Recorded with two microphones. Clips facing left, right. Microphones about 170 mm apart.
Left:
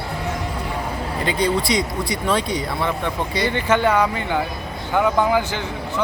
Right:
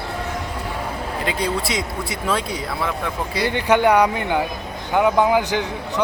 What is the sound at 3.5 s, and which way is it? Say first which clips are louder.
Speech: right 3 dB; 15° right (ahead or behind).